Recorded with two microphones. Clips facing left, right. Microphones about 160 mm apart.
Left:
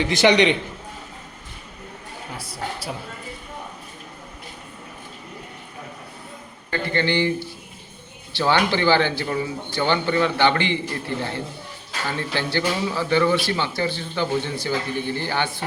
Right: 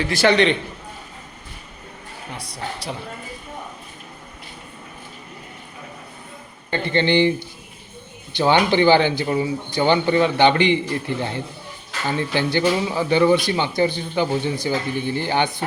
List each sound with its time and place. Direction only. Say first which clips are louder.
0.0 s a man's voice: even; 20° left (ahead or behind)
2.3 s speech: even; 5° left (ahead or behind)
6.7 s speech: right 3 dB; 20° right (ahead or behind)
12.1 s speech: right 4 dB; 15° right (ahead or behind)